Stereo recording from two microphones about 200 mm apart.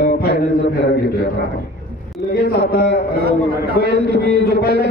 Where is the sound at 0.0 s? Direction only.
50° left (ahead or behind).